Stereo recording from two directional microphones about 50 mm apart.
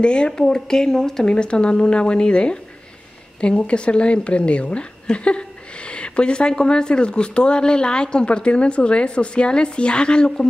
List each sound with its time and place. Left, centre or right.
0.0 s speech: centre